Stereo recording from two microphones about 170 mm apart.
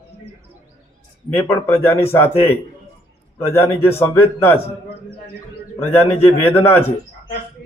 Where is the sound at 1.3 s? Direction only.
15° left (ahead or behind).